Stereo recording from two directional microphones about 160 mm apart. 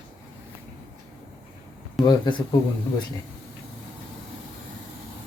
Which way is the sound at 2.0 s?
25° left (ahead or behind).